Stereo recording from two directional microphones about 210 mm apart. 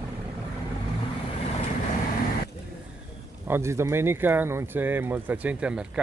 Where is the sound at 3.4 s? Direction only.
10° right (ahead or behind).